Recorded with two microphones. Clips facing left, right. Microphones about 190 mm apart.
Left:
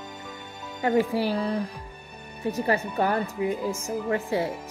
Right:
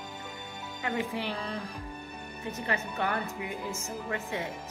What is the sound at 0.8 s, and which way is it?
Speech, 35° left (ahead or behind).